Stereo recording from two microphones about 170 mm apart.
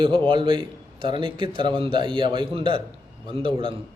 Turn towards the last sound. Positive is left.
turn(degrees=-30)  # may be behind; listen again after turning